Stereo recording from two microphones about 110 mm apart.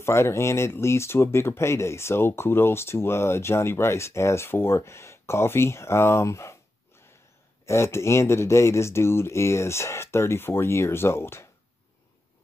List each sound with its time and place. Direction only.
0.0 s speech: 25° left (ahead or behind)
7.6 s speech: 25° left (ahead or behind)